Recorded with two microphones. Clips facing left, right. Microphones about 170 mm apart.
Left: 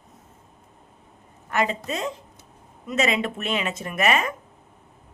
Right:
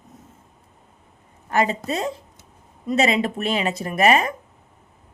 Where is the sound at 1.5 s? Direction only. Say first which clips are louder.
Right 3 dB; 35° right (ahead or behind).